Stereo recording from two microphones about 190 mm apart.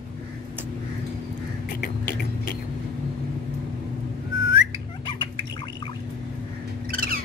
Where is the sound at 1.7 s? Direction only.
50° left (ahead or behind).